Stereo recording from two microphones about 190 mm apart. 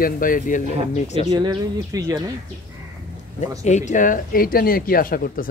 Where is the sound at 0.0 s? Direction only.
45° left (ahead or behind).